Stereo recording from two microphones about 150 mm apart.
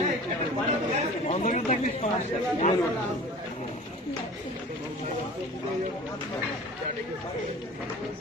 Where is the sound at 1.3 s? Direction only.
50° left (ahead or behind).